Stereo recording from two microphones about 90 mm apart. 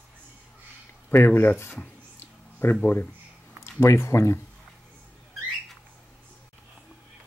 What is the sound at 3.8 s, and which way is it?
Speech, 30° left (ahead or behind).